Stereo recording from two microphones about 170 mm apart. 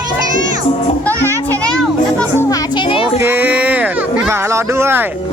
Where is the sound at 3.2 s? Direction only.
10° right (ahead or behind).